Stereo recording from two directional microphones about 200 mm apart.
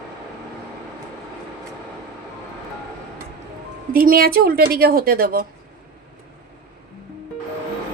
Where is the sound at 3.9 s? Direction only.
45° right (ahead or behind).